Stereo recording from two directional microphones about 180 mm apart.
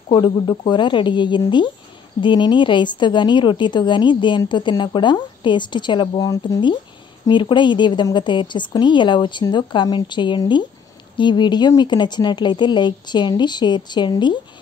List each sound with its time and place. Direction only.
0.1 s a woman's voice: 25° left (ahead or behind)